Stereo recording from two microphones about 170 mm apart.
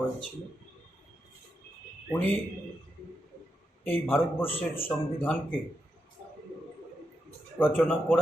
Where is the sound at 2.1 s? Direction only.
10° left (ahead or behind).